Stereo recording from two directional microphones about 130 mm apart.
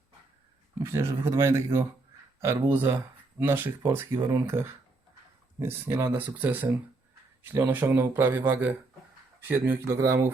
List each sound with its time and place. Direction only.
0.8 s speech: 20° right (ahead or behind)